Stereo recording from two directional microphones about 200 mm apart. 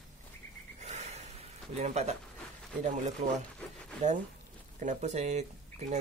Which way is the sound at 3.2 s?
30° right (ahead or behind).